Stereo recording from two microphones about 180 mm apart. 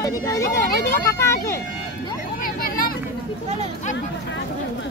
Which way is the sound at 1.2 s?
15° left (ahead or behind).